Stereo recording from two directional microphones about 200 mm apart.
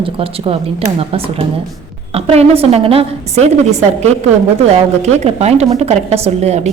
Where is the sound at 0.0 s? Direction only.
30° right (ahead or behind).